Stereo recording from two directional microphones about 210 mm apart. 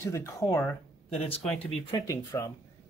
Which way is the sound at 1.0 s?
30° left (ahead or behind).